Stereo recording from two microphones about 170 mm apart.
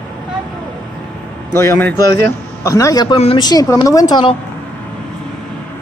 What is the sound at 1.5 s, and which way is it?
A man's voice, 15° left (ahead or behind).